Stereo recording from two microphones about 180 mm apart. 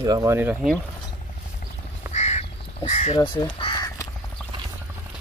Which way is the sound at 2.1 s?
40° left (ahead or behind).